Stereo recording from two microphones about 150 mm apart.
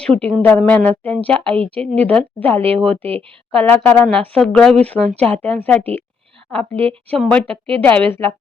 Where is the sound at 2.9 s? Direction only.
40° right (ahead or behind).